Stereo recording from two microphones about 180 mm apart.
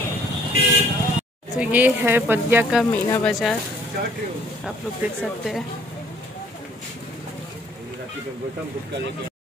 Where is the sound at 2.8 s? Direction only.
10° left (ahead or behind).